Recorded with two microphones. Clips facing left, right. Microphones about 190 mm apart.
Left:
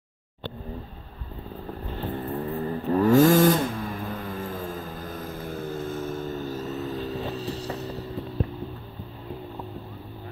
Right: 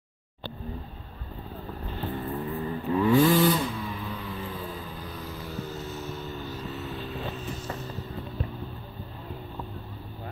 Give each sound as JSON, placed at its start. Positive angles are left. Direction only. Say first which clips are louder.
{"t": 2.1, "sound": "vehicle", "louder": "left 3 dB", "side_deg": 35}